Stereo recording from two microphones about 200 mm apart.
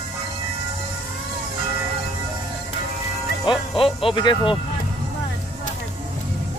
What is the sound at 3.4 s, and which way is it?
Speech, 25° left (ahead or behind).